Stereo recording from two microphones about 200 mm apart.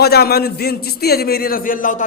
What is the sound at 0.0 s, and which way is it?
A man's voice, 50° left (ahead or behind).